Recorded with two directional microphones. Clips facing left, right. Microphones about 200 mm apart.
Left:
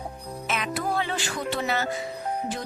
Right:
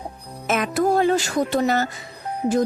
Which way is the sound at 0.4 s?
45° right (ahead or behind).